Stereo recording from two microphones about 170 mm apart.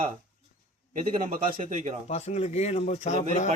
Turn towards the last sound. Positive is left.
turn(degrees=45)  # may be behind; listen again after turning